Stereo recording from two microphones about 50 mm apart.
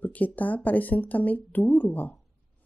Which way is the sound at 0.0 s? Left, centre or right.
Left.